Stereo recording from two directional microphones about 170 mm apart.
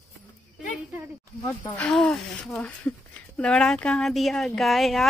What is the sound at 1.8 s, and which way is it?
Speech, 5° left (ahead or behind).